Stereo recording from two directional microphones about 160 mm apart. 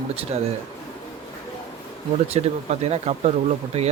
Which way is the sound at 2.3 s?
40° right (ahead or behind).